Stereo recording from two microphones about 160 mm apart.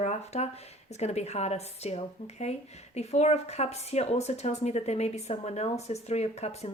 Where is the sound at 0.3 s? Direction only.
45° left (ahead or behind).